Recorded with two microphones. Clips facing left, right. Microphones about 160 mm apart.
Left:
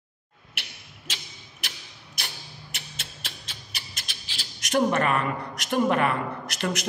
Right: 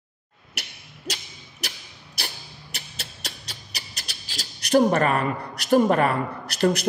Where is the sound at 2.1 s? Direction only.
35° right (ahead or behind).